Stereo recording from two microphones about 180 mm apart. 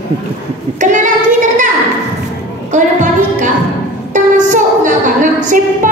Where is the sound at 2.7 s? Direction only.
45° right (ahead or behind).